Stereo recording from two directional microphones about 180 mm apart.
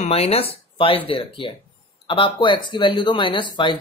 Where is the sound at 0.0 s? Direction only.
35° left (ahead or behind).